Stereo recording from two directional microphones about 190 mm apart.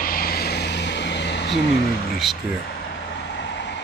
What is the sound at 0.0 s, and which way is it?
Vehicle, 50° left (ahead or behind).